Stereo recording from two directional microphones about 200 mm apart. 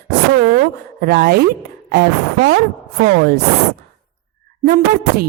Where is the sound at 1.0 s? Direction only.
50° right (ahead or behind).